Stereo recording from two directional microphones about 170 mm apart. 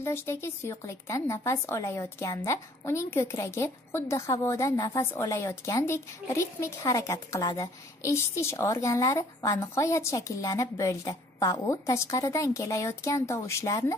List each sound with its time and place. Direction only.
0.0 s speech: 15° left (ahead or behind)
5.2 s speech: 25° left (ahead or behind)